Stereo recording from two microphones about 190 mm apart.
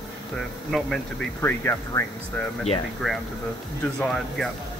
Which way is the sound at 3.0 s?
Centre (ahead or behind).